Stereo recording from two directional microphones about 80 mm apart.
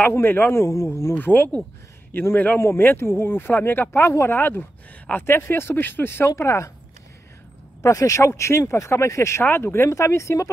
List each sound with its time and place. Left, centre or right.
0.0 s speech: left
1.1 s speech: left
7.8 s speech: left